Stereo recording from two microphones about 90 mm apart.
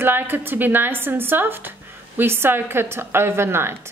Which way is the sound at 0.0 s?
25° right (ahead or behind).